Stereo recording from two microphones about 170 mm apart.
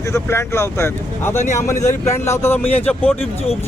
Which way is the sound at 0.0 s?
15° left (ahead or behind).